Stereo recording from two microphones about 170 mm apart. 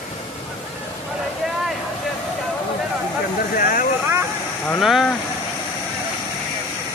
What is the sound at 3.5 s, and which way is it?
Speech, 55° left (ahead or behind).